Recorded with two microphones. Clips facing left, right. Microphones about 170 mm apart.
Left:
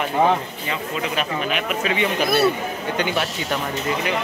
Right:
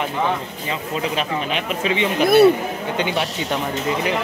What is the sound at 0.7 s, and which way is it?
Speech, 25° right (ahead or behind).